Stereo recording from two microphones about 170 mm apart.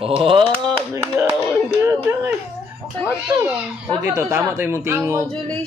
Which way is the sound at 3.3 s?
20° right (ahead or behind).